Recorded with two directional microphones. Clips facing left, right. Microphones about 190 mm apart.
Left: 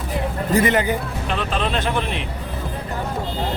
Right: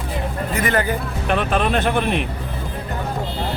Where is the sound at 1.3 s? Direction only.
55° right (ahead or behind).